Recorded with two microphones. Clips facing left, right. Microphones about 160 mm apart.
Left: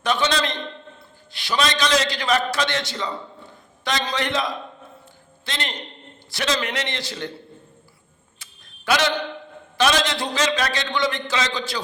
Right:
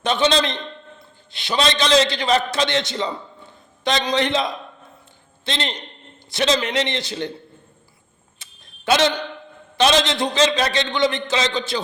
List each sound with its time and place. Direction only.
0.0 s a man's voice: 25° right (ahead or behind)
8.4 s a sound: 25° right (ahead or behind)
9.7 s a man's voice: 20° right (ahead or behind)